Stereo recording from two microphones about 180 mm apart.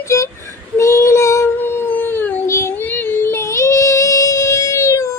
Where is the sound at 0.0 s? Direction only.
15° left (ahead or behind).